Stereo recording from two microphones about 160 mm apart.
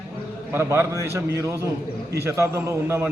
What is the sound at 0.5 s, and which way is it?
A man's voice, 15° right (ahead or behind).